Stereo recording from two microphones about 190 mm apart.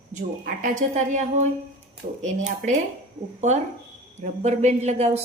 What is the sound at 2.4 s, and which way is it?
Speech, 40° right (ahead or behind).